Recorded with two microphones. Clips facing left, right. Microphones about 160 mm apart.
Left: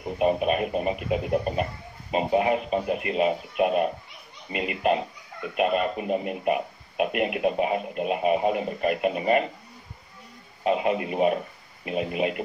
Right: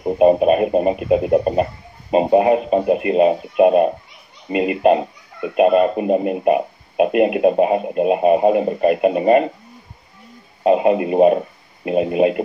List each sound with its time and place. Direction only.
0.0 s speech: 40° right (ahead or behind)
10.6 s speech: 40° right (ahead or behind)